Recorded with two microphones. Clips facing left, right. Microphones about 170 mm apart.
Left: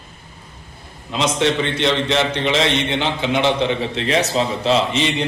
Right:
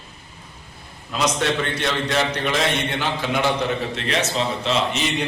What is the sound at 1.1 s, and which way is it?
A man's voice, 25° left (ahead or behind).